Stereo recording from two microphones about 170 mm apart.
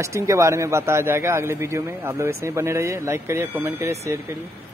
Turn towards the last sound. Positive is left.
turn(degrees=-15)  # may be behind; listen again after turning